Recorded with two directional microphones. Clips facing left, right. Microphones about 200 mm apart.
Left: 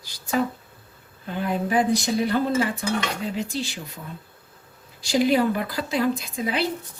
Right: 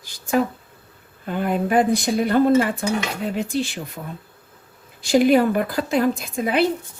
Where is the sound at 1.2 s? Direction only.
55° right (ahead or behind).